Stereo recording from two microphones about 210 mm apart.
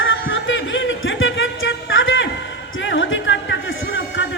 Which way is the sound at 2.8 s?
60° left (ahead or behind).